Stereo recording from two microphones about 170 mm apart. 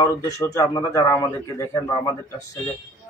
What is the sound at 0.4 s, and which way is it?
A man's voice, 20° left (ahead or behind).